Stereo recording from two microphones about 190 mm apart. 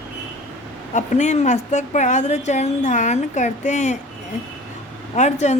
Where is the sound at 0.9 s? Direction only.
40° left (ahead or behind).